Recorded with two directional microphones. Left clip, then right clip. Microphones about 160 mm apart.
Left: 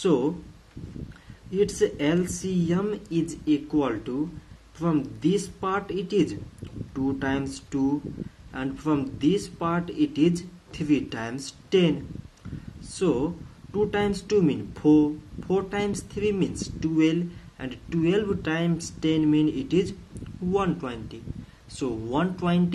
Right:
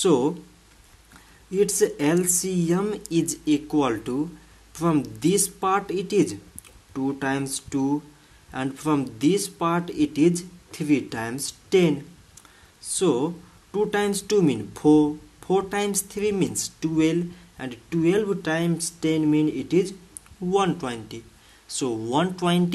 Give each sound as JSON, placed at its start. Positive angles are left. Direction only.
{"t": 0.0, "sound": "speech", "side_deg": -25}
{"t": 1.6, "sound": "speech", "side_deg": -25}